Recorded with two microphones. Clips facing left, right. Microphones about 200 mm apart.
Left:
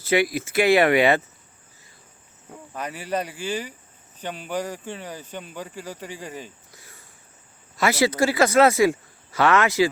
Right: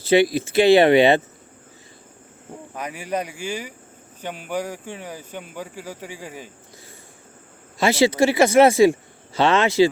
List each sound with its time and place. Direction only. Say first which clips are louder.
0.1 s speech: right 5 dB; 30° right (ahead or behind)
2.7 s speech: right 1 dB; 10° right (ahead or behind)
7.8 s speech: right 3 dB; 25° right (ahead or behind)